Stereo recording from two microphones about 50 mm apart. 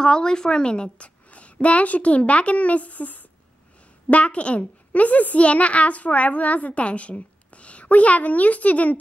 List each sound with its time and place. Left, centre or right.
0.0 s a woman's voice: centre